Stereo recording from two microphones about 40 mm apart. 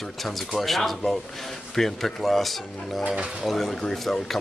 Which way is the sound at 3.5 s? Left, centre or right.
Centre.